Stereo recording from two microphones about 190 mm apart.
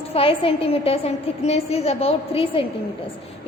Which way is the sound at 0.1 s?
30° left (ahead or behind).